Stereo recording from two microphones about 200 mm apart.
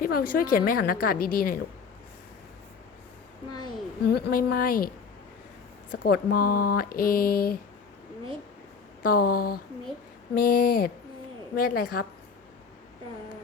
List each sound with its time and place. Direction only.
0.0 s speech: 45° left (ahead or behind)
4.1 s speech: 50° left (ahead or behind)
9.0 s speech: 50° left (ahead or behind)